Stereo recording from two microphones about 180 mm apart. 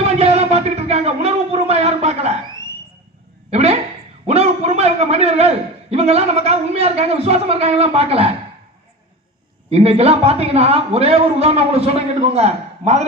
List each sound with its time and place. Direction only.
0.2 s music: 35° right (ahead or behind)
3.5 s a sound: 35° right (ahead or behind)
4.3 s a man's voice: 35° right (ahead or behind)
9.6 s a man's voice: 35° right (ahead or behind)